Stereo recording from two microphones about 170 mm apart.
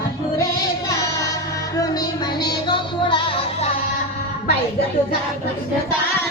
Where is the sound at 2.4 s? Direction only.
30° left (ahead or behind).